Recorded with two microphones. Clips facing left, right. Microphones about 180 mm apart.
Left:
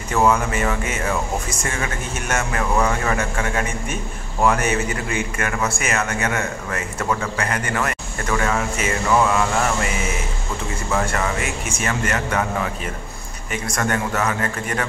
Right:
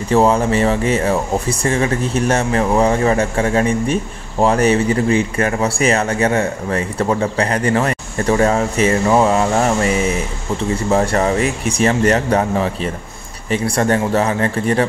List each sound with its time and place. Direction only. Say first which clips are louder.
0.1 s speech: right 5 dB; 30° right (ahead or behind)